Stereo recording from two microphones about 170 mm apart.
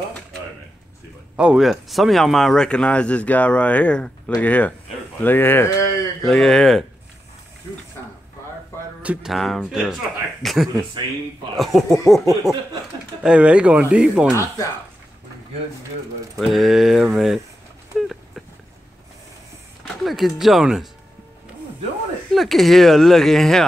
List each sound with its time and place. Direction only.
1.3 s speech: 5° right (ahead or behind); by 5.9 s 15° left (ahead or behind)
6.2 s speech: centre (ahead or behind)
9.0 s speech: 5° right (ahead or behind)
14.3 s speech: 15° left (ahead or behind)
16.3 s speech: centre (ahead or behind)
17.9 s a sound: centre (ahead or behind)
19.8 s speech: centre (ahead or behind)
22.3 s speech: centre (ahead or behind)